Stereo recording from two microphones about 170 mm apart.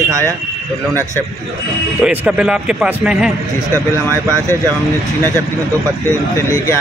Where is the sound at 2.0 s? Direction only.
5° right (ahead or behind).